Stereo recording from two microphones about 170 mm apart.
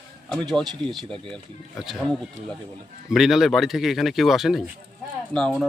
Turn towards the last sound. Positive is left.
turn(degrees=5)  # may be behind; listen again after turning